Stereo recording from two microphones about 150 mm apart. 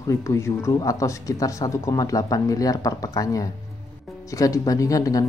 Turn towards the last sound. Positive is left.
turn(degrees=25)  # may be behind; listen again after turning